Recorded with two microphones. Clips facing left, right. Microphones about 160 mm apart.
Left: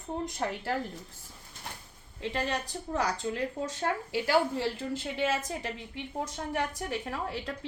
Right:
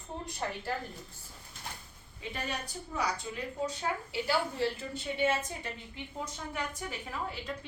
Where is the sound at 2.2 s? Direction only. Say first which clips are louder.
Left 6 dB; 80° left.